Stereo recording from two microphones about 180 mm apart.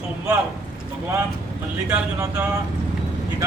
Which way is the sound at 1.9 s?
10° right (ahead or behind).